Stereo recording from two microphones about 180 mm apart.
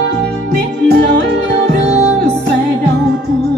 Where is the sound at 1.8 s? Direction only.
35° right (ahead or behind).